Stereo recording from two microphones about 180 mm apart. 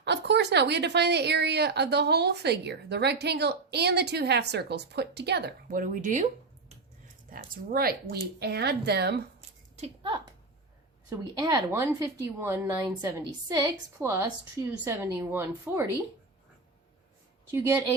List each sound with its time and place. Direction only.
0.0 s a woman's voice: 70° right (ahead or behind); by 6.2 s 45° right (ahead or behind)
7.3 s speech: 50° right (ahead or behind)
9.7 s speech: 35° right (ahead or behind)
11.1 s a woman's voice: 20° right (ahead or behind)
17.5 s a woman's voice: 10° right (ahead or behind)